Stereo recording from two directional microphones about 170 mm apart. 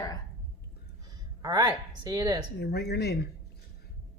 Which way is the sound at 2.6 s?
70° left (ahead or behind).